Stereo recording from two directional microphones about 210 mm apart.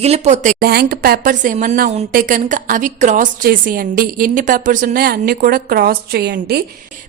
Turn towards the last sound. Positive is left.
turn(degrees=-50)  # may be behind; listen again after turning